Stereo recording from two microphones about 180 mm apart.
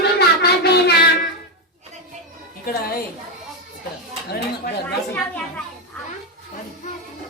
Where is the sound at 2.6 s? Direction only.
55° left (ahead or behind).